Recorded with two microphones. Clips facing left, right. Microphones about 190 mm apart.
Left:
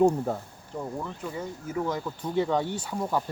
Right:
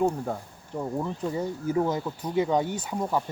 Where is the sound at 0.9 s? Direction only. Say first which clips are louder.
Right 5 dB; 30° right (ahead or behind).